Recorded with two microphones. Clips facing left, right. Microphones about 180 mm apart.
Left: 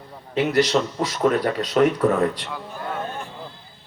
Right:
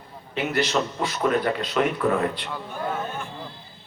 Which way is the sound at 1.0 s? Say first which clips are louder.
Left 2 dB; 40° left (ahead or behind).